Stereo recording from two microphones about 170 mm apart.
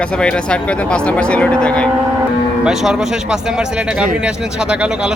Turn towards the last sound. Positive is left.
turn(degrees=-5)  # may be behind; listen again after turning